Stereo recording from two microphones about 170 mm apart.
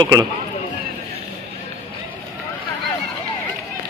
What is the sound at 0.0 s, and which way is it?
Speech, 20° right (ahead or behind).